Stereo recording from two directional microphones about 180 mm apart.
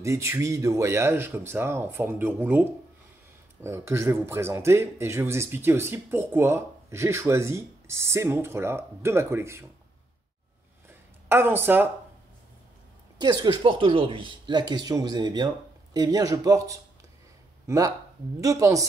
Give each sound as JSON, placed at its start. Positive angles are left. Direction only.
{"t": 0.0, "sound": "a man's voice", "side_deg": -15}
{"t": 10.9, "sound": "a sound", "side_deg": -10}
{"t": 13.2, "sound": "speech", "side_deg": -20}